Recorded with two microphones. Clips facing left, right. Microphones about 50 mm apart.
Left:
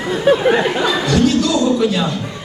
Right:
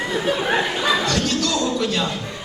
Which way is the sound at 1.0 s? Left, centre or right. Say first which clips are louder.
Left 7 dB; centre.